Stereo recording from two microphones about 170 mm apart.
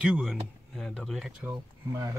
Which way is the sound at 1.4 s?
15° right (ahead or behind).